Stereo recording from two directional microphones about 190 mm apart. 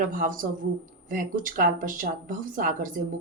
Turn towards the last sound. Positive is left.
turn(degrees=-45)  # may be behind; listen again after turning